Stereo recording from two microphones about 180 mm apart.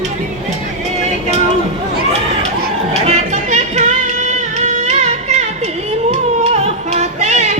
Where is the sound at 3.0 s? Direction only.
40° right (ahead or behind).